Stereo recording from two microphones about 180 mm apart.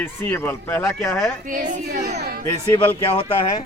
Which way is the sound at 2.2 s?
60° right (ahead or behind).